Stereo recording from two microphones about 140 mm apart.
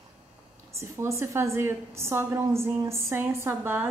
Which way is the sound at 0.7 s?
20° right (ahead or behind).